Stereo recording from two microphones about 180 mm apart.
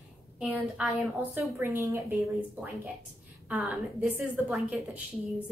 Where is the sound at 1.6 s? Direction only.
15° right (ahead or behind).